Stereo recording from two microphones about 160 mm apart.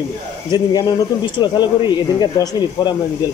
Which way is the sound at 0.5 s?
25° left (ahead or behind).